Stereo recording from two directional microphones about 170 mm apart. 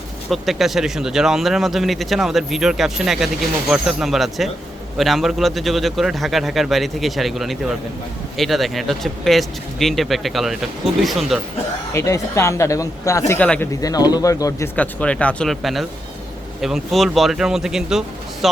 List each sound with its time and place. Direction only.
0.3 s speech: centre (ahead or behind)
11.9 s speech: 20° left (ahead or behind)
13.8 s speech: 20° left (ahead or behind)
14.8 s speech: 5° left (ahead or behind)